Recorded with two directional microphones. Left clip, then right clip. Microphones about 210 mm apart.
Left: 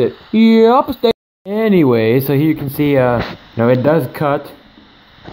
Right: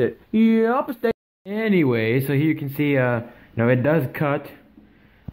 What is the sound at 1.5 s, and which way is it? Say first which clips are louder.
Speech: left 8 dB; 5° left (ahead or behind).